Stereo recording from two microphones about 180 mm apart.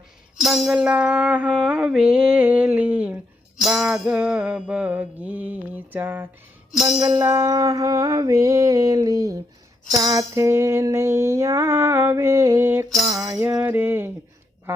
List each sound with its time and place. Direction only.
0.3 s music: centre (ahead or behind)
6.8 s music: 20° right (ahead or behind)